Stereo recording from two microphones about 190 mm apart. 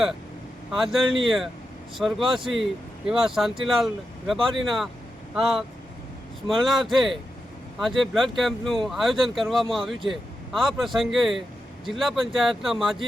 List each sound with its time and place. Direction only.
0.7 s speech: centre (ahead or behind)